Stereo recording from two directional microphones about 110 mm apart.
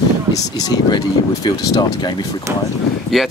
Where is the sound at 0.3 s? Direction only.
35° left (ahead or behind).